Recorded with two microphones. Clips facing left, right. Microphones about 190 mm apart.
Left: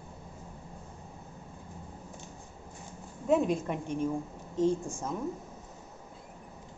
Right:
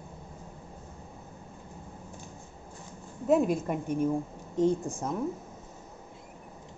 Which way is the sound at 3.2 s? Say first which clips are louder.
Right 2 dB; 5° right (ahead or behind).